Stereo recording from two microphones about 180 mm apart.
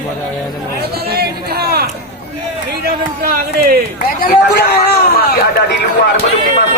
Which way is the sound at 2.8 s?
60° right (ahead or behind).